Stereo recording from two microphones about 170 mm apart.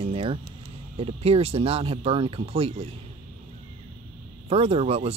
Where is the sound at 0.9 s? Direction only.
35° right (ahead or behind).